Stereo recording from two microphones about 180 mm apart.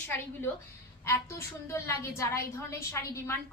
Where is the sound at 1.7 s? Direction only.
15° left (ahead or behind).